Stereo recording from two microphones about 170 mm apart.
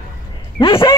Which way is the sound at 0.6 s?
30° left (ahead or behind).